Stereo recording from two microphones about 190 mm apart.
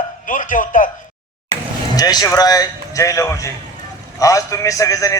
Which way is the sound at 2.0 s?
20° left (ahead or behind).